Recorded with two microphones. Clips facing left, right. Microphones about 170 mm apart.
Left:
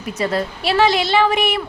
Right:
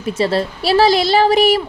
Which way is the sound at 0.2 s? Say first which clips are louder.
Right 3 dB; 30° right (ahead or behind).